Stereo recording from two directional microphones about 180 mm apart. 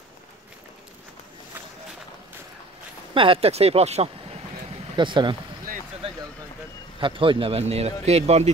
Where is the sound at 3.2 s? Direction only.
30° right (ahead or behind).